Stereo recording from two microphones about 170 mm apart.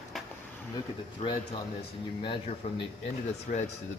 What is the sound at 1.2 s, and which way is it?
Speech, 40° left (ahead or behind).